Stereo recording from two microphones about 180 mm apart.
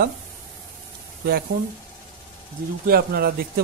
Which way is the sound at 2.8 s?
55° right (ahead or behind).